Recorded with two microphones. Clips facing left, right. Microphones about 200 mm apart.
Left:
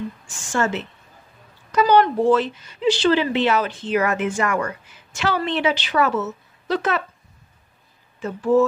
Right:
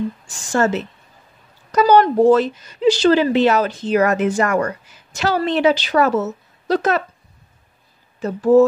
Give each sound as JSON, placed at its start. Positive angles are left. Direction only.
{"t": 0.3, "sound": "a woman's voice", "side_deg": -40}
{"t": 8.2, "sound": "a woman's voice", "side_deg": -40}